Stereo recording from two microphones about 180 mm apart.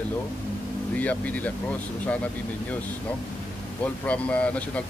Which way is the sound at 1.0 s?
10° left (ahead or behind).